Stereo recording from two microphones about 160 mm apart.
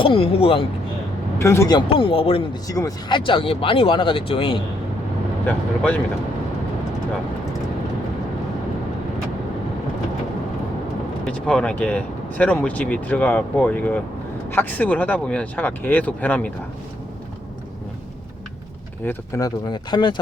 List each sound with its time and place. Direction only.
0.0 s speech: 35° left (ahead or behind)
1.4 s speech: 15° left (ahead or behind); by 2.6 s 35° left (ahead or behind)
2.6 s speech: 20° left (ahead or behind)
5.5 s speech: 10° left (ahead or behind)
11.3 s speech: 5° left (ahead or behind)
19.0 s speech: 15° left (ahead or behind)
19.7 s speech: 30° left (ahead or behind)